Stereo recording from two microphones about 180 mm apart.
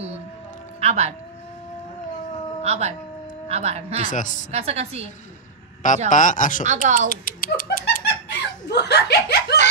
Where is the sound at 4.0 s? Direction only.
45° left (ahead or behind).